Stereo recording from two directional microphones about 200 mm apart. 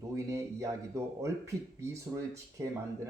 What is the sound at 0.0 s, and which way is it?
A man's voice, 15° right (ahead or behind).